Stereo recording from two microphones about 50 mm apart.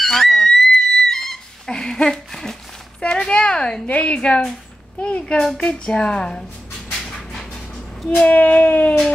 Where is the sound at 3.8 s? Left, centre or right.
Left.